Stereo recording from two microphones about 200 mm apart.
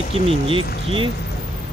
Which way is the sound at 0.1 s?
25° right (ahead or behind).